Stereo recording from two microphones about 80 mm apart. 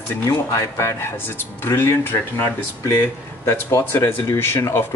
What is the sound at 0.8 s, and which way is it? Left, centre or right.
A man's voice, left.